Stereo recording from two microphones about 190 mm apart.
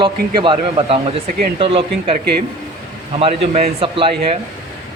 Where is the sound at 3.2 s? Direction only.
30° right (ahead or behind).